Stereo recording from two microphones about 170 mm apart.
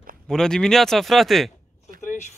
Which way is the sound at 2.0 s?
50° left (ahead or behind).